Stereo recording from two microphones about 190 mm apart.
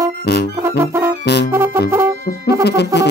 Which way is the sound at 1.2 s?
60° left (ahead or behind).